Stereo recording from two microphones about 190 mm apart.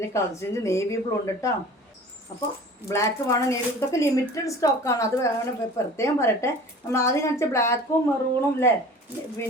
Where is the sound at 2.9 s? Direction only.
15° left (ahead or behind).